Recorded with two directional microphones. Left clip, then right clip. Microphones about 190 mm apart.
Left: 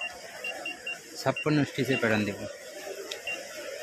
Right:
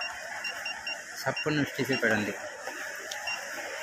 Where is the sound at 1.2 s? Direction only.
40° left (ahead or behind).